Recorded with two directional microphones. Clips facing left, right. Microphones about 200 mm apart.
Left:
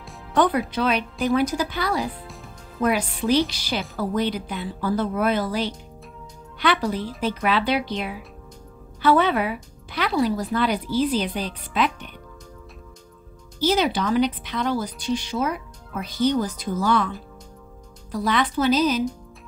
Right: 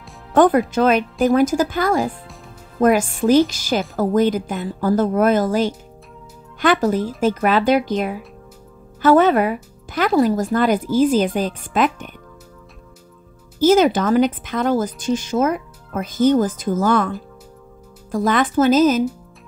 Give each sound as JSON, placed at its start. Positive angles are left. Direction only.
{"t": 0.3, "sound": "speech", "side_deg": -45}
{"t": 2.2, "sound": "music", "side_deg": 0}
{"t": 2.8, "sound": "speech", "side_deg": -45}
{"t": 13.6, "sound": "speech", "side_deg": -45}
{"t": 18.1, "sound": "speech", "side_deg": -50}